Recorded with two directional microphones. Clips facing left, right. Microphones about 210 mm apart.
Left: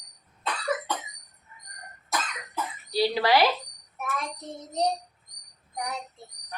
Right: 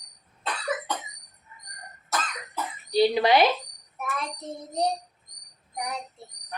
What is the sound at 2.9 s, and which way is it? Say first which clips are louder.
Speech: right 3 dB; 20° right (ahead or behind).